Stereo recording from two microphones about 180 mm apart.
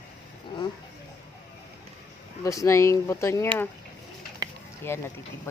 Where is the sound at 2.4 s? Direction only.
20° left (ahead or behind).